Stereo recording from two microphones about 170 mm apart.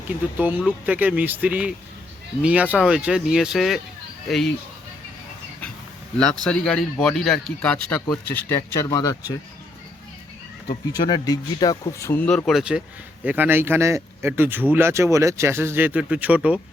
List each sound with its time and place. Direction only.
0.3 s speech: 10° right (ahead or behind)
6.4 s speech: 5° left (ahead or behind); by 9.4 s 25° left (ahead or behind)
10.7 s speech: 25° left (ahead or behind); by 16.6 s 10° right (ahead or behind)